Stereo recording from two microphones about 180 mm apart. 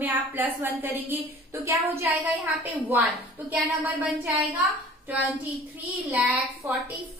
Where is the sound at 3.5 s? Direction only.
10° right (ahead or behind).